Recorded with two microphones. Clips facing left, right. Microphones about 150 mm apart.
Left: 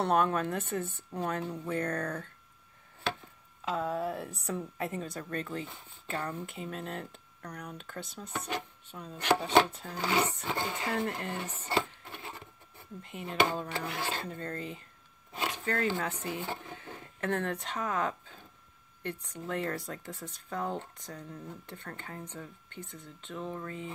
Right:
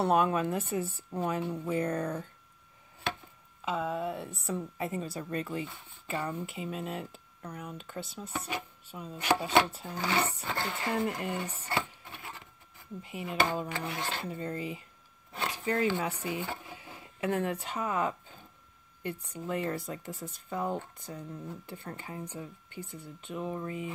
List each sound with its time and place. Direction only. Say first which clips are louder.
0.0 s speech: right 1 dB; 5° right (ahead or behind)
3.6 s speech: even; centre (ahead or behind)
9.9 s speech: left 1 dB; 10° left (ahead or behind)
10.9 s speech: right 5 dB; 5° right (ahead or behind)
11.7 s printer: left 3 dB; 25° left (ahead or behind)
13.0 s speech: left 1 dB; 5° right (ahead or behind)